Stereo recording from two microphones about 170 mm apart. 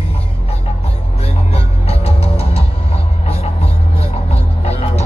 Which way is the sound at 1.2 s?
35° left (ahead or behind).